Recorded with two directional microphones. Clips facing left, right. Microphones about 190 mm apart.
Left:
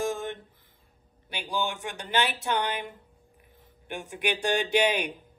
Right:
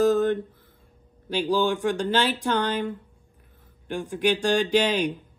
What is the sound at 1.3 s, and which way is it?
Speech, 10° left (ahead or behind).